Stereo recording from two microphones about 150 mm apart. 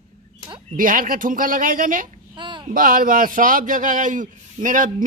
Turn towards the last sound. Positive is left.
turn(degrees=-60)  # may be behind; listen again after turning